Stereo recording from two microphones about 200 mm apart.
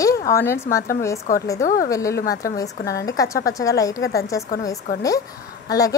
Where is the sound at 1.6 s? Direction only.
45° left (ahead or behind).